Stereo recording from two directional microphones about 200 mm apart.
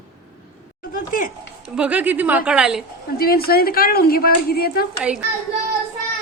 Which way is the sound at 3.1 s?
50° left (ahead or behind).